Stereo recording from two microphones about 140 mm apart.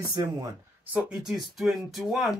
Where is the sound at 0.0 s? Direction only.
25° right (ahead or behind).